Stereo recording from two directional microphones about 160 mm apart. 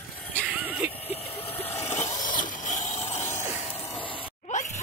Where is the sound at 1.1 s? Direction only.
35° left (ahead or behind).